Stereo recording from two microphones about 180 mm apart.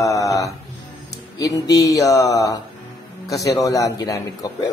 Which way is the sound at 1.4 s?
20° left (ahead or behind).